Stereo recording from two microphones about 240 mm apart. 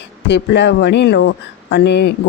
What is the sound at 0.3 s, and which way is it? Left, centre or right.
Speech, left.